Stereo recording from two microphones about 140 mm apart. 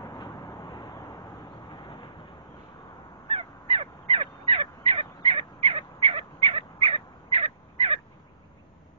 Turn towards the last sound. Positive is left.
turn(degrees=-40)  # may be behind; listen again after turning